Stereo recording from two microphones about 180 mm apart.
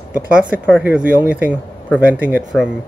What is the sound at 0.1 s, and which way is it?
Speech, 10° right (ahead or behind).